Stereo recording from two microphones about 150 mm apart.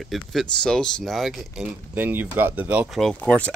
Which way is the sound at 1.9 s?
10° right (ahead or behind).